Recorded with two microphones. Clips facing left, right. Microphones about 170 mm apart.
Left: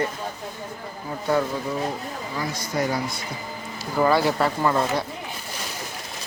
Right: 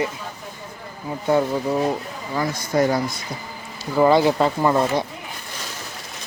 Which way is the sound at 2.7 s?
50° right (ahead or behind).